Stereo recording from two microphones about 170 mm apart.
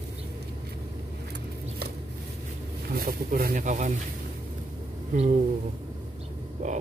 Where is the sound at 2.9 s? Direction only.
60° right (ahead or behind).